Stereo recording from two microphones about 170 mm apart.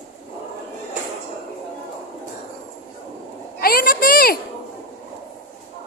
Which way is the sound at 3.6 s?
60° left (ahead or behind).